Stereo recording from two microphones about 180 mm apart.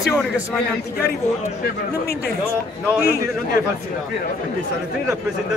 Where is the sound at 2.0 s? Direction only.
60° left (ahead or behind).